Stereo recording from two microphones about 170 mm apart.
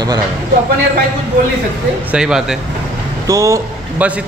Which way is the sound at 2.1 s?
5° right (ahead or behind).